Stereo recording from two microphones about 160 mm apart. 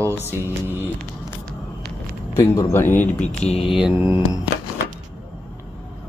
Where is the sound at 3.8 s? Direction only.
10° right (ahead or behind).